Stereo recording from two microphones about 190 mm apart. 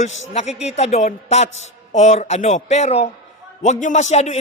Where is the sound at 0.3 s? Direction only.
35° left (ahead or behind).